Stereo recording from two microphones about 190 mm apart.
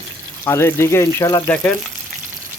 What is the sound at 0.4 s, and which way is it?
Speech, 15° left (ahead or behind).